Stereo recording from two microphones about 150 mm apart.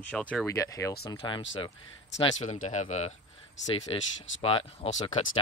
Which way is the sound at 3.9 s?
40° left (ahead or behind).